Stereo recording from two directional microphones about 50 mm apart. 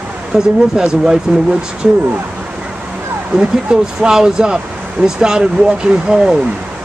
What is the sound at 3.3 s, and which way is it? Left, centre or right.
Speech, centre.